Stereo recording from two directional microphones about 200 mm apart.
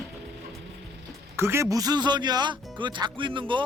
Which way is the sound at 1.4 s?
15° right (ahead or behind).